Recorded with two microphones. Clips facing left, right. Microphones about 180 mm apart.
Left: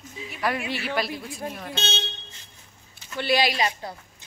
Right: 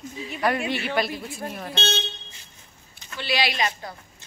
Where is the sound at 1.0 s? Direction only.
Centre (ahead or behind).